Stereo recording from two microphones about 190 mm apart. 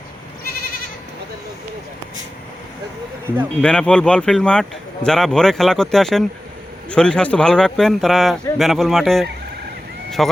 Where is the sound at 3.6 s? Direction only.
5° left (ahead or behind).